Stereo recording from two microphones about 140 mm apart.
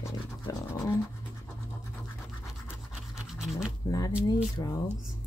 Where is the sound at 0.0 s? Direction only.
25° left (ahead or behind).